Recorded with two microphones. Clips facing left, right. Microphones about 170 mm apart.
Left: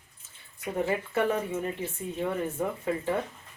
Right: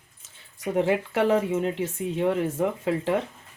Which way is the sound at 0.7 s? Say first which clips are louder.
Right 5 dB; 90° right.